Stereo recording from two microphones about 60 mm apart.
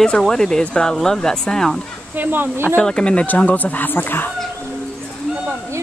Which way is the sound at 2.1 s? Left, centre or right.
Right.